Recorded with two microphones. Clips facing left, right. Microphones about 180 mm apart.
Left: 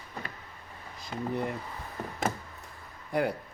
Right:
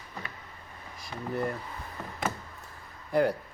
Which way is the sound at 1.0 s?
20° left (ahead or behind).